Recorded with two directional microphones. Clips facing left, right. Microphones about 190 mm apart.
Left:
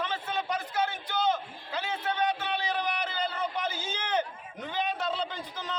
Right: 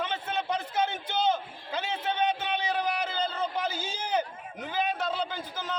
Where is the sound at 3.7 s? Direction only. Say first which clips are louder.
Right 1 dB; 10° right (ahead or behind).